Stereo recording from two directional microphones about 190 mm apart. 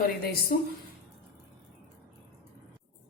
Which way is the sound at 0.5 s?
50° left (ahead or behind).